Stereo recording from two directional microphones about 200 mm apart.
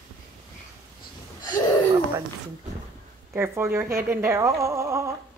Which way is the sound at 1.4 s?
20° left (ahead or behind).